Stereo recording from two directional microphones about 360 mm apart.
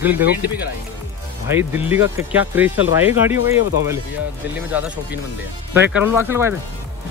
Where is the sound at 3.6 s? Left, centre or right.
Left.